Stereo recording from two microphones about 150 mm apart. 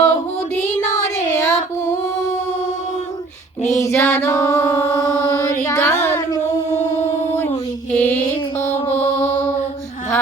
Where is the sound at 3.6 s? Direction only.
50° left (ahead or behind).